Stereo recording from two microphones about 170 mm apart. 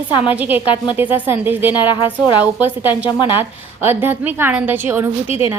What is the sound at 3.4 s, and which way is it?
A woman's voice, 10° right (ahead or behind).